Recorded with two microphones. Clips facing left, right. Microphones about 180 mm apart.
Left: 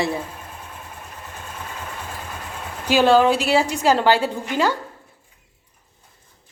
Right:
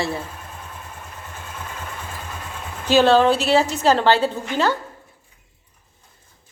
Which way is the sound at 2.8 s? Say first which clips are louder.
Right 1 dB; 10° left (ahead or behind).